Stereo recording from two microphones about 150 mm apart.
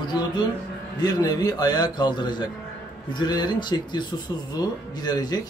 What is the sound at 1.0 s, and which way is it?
Speech, 25° left (ahead or behind).